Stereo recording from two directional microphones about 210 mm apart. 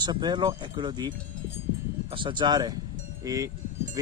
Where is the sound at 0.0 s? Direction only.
20° right (ahead or behind).